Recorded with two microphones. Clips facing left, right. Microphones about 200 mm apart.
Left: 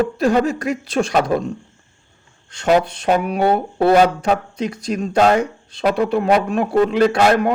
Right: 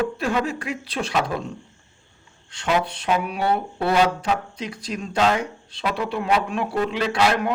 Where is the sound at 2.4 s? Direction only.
45° left (ahead or behind).